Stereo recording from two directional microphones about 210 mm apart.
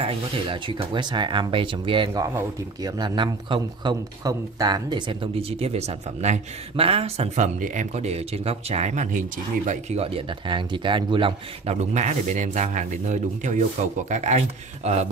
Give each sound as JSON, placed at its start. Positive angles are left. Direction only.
{"t": 0.0, "sound": "speech", "side_deg": -25}